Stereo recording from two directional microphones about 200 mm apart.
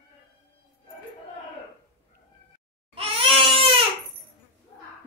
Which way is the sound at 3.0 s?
30° right (ahead or behind).